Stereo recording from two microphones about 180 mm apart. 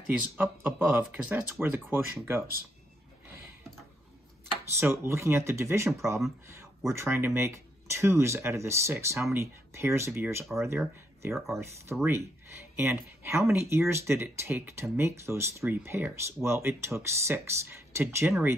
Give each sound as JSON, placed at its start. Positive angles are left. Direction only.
{"t": 0.4, "sound": "speech", "side_deg": -10}
{"t": 4.7, "sound": "speech", "side_deg": -15}
{"t": 6.9, "sound": "speech", "side_deg": -15}
{"t": 11.3, "sound": "speech", "side_deg": 0}
{"t": 11.6, "sound": "speech", "side_deg": -15}